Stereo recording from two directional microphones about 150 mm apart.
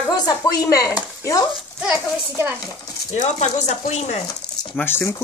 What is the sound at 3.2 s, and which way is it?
Speech, 50° left (ahead or behind).